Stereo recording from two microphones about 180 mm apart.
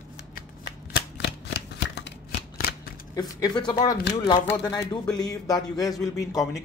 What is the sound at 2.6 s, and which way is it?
Shuffling cards, 60° left (ahead or behind).